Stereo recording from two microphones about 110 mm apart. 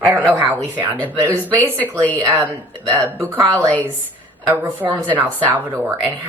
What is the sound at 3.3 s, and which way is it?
Speech, 30° right (ahead or behind).